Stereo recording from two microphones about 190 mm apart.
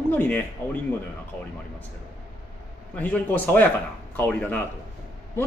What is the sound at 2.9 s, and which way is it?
Speech, 10° left (ahead or behind).